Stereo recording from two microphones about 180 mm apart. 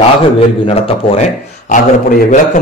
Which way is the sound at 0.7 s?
35° left (ahead or behind).